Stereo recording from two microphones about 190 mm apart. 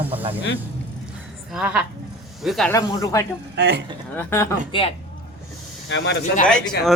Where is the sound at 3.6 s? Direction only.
60° right (ahead or behind).